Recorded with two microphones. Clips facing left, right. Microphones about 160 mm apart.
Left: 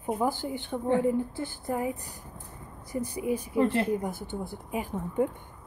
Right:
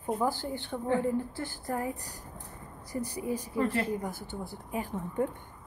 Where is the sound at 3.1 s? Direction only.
20° left (ahead or behind).